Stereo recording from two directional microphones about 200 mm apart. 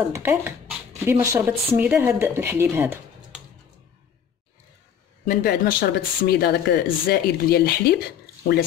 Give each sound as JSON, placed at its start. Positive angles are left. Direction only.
{"t": 0.1, "sound": "speech", "side_deg": -10}
{"t": 5.2, "sound": "speech", "side_deg": 45}